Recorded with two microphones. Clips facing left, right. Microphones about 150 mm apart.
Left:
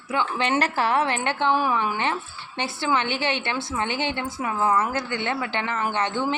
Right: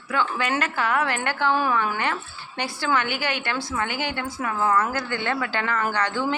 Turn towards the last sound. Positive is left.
turn(degrees=20)  # may be behind; listen again after turning